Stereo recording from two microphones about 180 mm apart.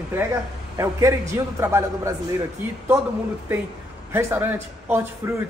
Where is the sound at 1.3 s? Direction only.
15° right (ahead or behind).